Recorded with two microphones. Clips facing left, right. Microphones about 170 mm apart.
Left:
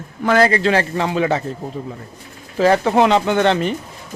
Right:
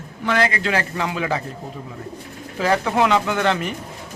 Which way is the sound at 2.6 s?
35° left (ahead or behind).